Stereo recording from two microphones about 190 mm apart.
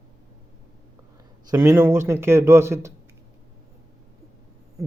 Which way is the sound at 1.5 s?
15° right (ahead or behind).